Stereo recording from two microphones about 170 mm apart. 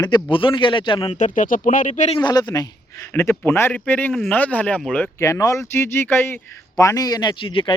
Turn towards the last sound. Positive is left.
turn(degrees=30)  # may be behind; listen again after turning